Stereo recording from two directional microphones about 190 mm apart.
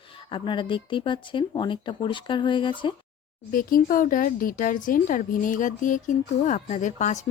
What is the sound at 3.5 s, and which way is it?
Speech, 45° left (ahead or behind).